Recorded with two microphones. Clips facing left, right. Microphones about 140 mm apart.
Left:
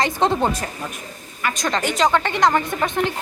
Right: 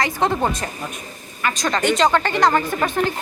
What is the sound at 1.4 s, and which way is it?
Speech, 5° left (ahead or behind).